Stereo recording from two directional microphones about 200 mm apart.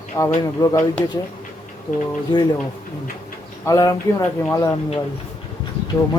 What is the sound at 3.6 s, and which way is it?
Speech, 15° left (ahead or behind).